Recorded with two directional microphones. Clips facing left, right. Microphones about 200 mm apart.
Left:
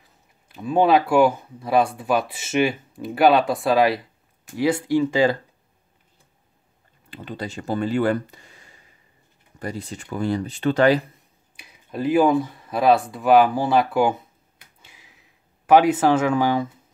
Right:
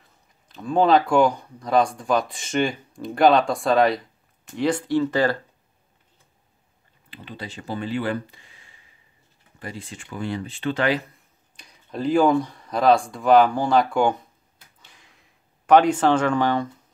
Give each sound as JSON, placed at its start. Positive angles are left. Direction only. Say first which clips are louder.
{"t": 0.0, "sound": "speech", "louder": "left 1 dB", "side_deg": 10}
{"t": 7.1, "sound": "speech", "louder": "left 5 dB", "side_deg": 45}
{"t": 11.5, "sound": "speech", "louder": "left 1 dB", "side_deg": 5}
{"t": 14.8, "sound": "a sound", "louder": "left 2 dB", "side_deg": 10}